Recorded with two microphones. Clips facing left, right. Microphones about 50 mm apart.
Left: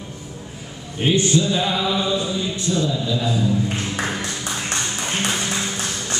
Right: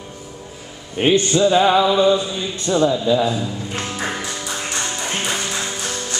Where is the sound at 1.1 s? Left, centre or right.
Right.